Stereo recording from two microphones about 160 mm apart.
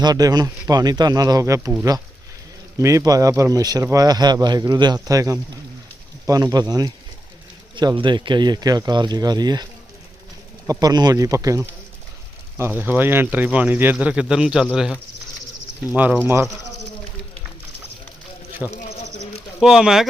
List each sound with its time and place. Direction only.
0.0 s speech: 25° right (ahead or behind)
2.7 s speech: 20° right (ahead or behind)
10.7 s speech: 25° right (ahead or behind); by 14.7 s 5° right (ahead or behind)
16.0 s speech: 10° right (ahead or behind)
18.7 s a sound: 45° left (ahead or behind)
19.5 s speech: 5° right (ahead or behind)